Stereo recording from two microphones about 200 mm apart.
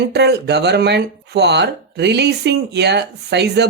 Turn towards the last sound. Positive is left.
turn(degrees=-55)  # may be behind; listen again after turning